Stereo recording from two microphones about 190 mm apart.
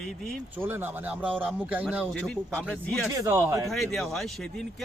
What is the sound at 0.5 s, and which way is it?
Speech, 10° right (ahead or behind).